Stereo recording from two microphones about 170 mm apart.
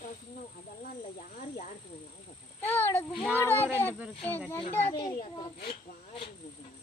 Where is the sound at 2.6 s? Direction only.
10° left (ahead or behind).